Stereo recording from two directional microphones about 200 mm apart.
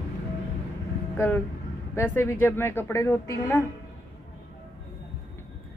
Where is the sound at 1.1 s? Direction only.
10° left (ahead or behind).